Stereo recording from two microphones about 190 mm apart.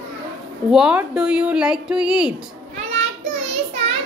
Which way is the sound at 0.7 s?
5° right (ahead or behind).